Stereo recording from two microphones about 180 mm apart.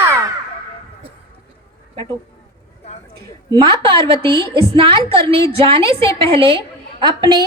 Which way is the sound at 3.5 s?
30° right (ahead or behind).